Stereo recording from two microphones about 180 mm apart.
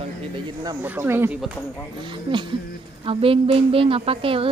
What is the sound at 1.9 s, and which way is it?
A woman's voice, 25° right (ahead or behind).